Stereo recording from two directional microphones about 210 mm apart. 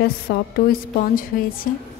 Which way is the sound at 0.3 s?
50° left (ahead or behind).